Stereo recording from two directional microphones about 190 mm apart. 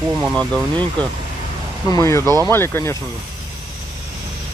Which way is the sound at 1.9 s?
15° left (ahead or behind).